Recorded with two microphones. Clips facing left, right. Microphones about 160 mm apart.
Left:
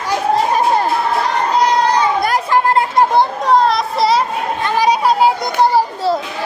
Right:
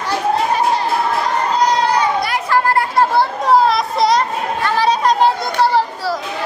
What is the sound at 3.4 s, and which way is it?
Children playing, centre (ahead or behind).